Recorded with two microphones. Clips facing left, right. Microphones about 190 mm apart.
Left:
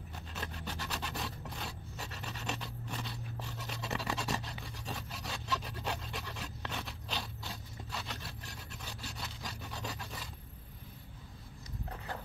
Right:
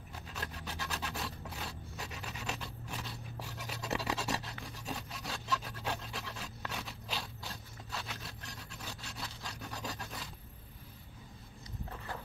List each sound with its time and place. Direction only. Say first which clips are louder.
0.3 s rub: left 1 dB; centre (ahead or behind)
6.7 s scrape: even; 5° right (ahead or behind)
9.1 s wood: left 1 dB; centre (ahead or behind)